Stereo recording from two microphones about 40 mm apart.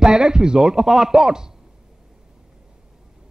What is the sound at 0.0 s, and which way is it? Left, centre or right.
Speech, centre.